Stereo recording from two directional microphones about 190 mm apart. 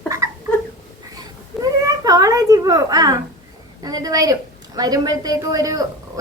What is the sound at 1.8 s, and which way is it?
A child's voice, 20° right (ahead or behind).